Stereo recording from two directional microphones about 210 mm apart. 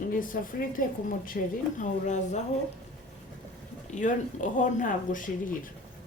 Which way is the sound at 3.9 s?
35° left (ahead or behind).